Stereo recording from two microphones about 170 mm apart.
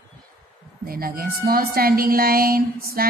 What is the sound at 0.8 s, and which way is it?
A woman's voice, 60° right (ahead or behind).